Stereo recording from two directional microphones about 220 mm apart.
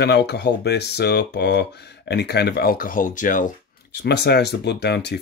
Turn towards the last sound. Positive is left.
turn(degrees=50)  # may be behind; listen again after turning